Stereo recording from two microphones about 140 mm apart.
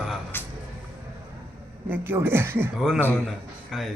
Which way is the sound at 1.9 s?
15° right (ahead or behind).